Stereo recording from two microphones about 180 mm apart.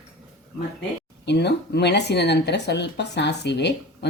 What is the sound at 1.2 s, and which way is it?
Speech, 70° left (ahead or behind).